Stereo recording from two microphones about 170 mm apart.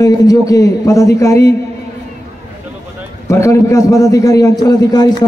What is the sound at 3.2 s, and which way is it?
A man's voice, 15° left (ahead or behind).